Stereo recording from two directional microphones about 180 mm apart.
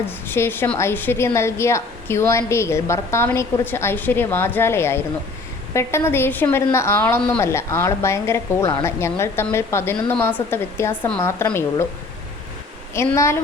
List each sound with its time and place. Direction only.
0.3 s a woman's voice: 10° left (ahead or behind)
12.9 s a woman's voice: 15° left (ahead or behind)